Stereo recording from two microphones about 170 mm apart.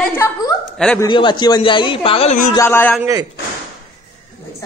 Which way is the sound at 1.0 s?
30° left (ahead or behind).